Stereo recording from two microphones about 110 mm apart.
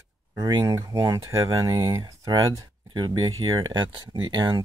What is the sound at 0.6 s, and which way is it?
Speech, 30° right (ahead or behind).